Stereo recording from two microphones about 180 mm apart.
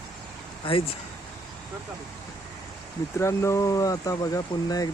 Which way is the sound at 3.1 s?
15° left (ahead or behind).